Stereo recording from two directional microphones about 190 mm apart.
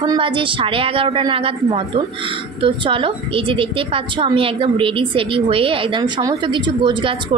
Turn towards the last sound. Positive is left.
turn(degrees=-25)  # may be behind; listen again after turning